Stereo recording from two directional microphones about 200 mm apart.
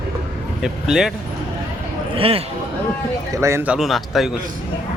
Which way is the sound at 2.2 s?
30° right (ahead or behind).